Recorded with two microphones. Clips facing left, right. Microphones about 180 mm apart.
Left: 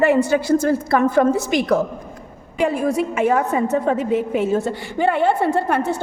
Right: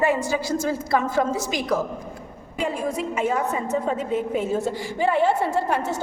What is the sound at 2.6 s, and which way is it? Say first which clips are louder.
A woman's voice: left 7 dB; 75° left (ahead or behind).